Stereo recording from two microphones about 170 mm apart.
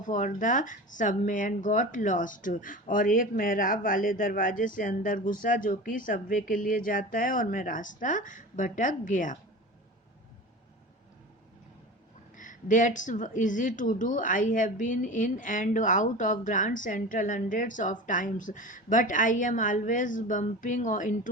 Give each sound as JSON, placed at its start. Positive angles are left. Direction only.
{"t": 0.0, "sound": "speech", "side_deg": 50}
{"t": 12.4, "sound": "speech", "side_deg": 50}